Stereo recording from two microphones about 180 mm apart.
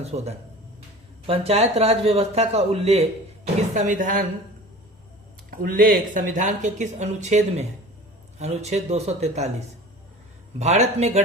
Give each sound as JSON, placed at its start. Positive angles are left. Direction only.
{"t": 0.0, "sound": "speech", "side_deg": -35}
{"t": 5.5, "sound": "speech", "side_deg": -55}